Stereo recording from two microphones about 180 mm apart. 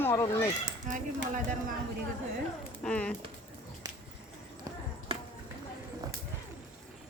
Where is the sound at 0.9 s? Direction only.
45° right (ahead or behind).